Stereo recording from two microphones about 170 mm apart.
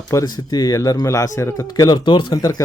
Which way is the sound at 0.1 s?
20° left (ahead or behind).